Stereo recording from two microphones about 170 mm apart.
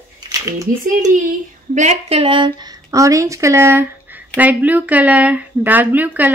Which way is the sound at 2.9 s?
20° right (ahead or behind).